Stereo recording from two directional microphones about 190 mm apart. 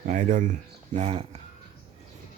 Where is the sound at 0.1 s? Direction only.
45° right (ahead or behind).